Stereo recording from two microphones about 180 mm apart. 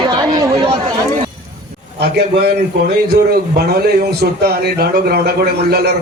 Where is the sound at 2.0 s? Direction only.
65° right (ahead or behind).